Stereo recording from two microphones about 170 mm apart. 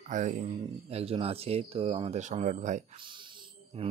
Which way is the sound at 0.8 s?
35° right (ahead or behind).